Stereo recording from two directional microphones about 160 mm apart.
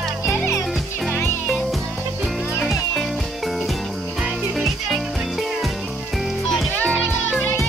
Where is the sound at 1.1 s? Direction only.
15° left (ahead or behind).